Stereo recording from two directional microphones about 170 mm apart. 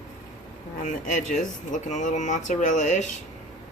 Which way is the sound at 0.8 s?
45° left (ahead or behind).